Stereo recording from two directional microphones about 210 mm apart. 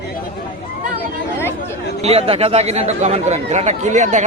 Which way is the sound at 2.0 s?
30° right (ahead or behind).